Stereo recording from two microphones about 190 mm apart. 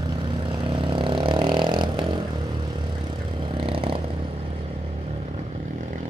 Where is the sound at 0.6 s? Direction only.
25° right (ahead or behind).